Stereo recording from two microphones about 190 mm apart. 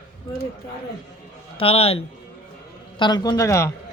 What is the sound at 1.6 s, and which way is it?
A man's voice, 30° left (ahead or behind).